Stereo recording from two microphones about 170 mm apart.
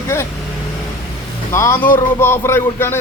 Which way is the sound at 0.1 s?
15° left (ahead or behind).